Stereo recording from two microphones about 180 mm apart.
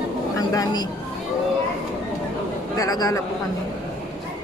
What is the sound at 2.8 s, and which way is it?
Speech, 20° left (ahead or behind).